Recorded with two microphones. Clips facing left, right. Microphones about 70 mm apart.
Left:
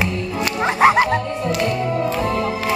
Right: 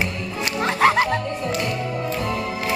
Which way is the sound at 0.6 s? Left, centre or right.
Centre.